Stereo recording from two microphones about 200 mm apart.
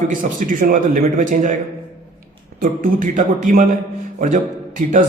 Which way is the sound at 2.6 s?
45° right (ahead or behind).